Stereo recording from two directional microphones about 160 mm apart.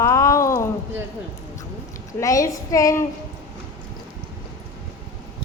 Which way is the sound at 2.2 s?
20° left (ahead or behind).